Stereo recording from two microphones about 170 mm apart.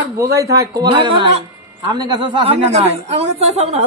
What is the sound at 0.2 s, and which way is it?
Speech, 20° right (ahead or behind).